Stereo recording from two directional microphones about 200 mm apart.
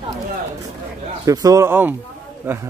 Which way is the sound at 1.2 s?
15° right (ahead or behind).